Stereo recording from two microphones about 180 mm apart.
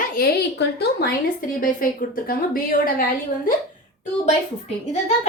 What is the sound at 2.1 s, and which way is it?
Speech, 50° left (ahead or behind).